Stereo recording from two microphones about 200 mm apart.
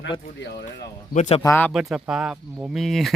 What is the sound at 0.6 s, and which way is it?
Speech, 40° left (ahead or behind).